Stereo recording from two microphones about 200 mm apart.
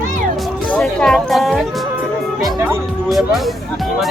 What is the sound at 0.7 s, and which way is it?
Music, 5° left (ahead or behind).